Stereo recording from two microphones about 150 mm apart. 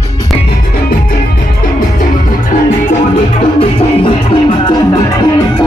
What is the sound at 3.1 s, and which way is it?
Music, 40° left (ahead or behind).